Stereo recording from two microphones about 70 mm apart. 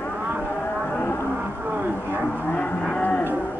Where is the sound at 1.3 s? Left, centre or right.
Right.